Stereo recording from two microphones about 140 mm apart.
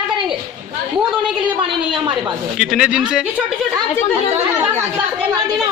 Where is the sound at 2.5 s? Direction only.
5° right (ahead or behind).